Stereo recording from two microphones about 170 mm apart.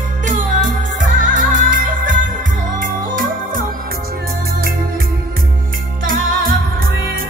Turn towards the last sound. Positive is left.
turn(degrees=-55)  # may be behind; listen again after turning